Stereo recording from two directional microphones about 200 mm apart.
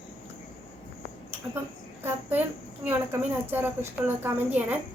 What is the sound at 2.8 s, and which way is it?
A woman's voice, 10° right (ahead or behind).